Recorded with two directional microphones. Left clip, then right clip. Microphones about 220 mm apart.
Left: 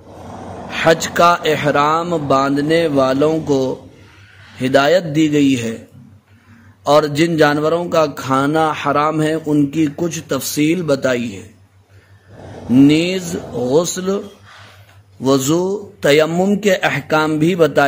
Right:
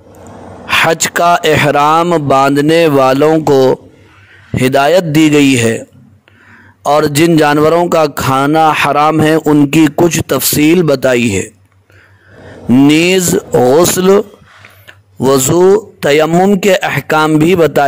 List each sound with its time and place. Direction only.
0.7 s a man's voice: 50° right (ahead or behind)
6.8 s a man's voice: 50° right (ahead or behind)
12.8 s a man's voice: 50° right (ahead or behind)
15.2 s a man's voice: 50° right (ahead or behind)